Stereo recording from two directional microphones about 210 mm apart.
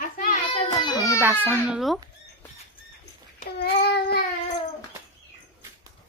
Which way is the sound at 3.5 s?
50° left (ahead or behind).